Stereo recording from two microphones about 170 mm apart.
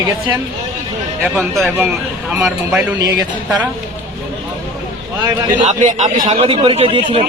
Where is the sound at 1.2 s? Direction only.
5° left (ahead or behind).